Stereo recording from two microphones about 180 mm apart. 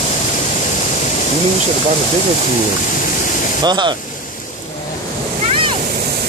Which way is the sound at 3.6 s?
25° right (ahead or behind).